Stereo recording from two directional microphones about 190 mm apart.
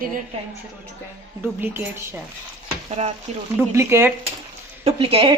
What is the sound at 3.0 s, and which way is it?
Speech, 35° right (ahead or behind).